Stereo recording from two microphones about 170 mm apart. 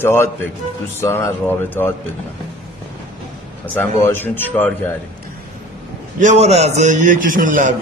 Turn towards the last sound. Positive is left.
turn(degrees=-50)  # may be behind; listen again after turning